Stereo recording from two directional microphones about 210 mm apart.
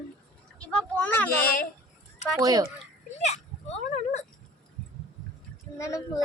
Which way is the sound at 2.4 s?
15° right (ahead or behind).